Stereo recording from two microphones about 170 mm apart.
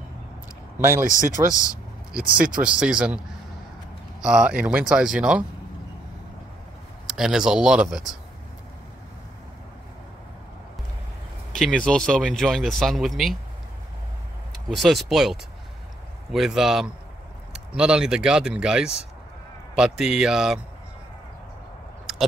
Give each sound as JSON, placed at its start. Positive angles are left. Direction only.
{"t": 0.7, "sound": "speech", "side_deg": -15}
{"t": 1.4, "sound": "speech", "side_deg": -25}
{"t": 2.6, "sound": "speech", "side_deg": -5}
{"t": 4.2, "sound": "speech", "side_deg": -5}
{"t": 7.1, "sound": "speech", "side_deg": -5}
{"t": 11.5, "sound": "speech", "side_deg": 5}
{"t": 14.7, "sound": "speech", "side_deg": 0}
{"t": 22.1, "sound": "a sound", "side_deg": 0}